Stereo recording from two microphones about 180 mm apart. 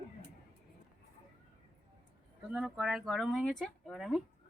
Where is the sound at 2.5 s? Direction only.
Centre (ahead or behind).